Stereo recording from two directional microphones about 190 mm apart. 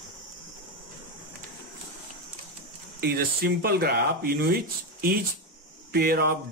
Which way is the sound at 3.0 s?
50° right (ahead or behind).